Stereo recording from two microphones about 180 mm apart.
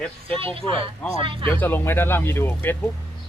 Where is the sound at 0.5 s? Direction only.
30° right (ahead or behind).